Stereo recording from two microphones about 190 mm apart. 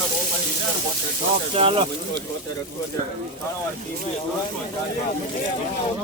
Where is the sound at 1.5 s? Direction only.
30° right (ahead or behind).